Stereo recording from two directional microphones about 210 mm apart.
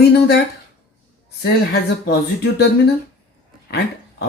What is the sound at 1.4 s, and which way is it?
Speech, 50° left (ahead or behind).